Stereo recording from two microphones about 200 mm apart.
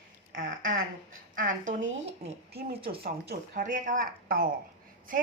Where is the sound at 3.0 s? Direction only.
45° right (ahead or behind).